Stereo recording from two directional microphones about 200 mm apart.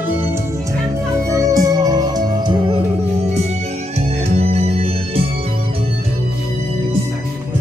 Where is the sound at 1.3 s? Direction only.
15° right (ahead or behind).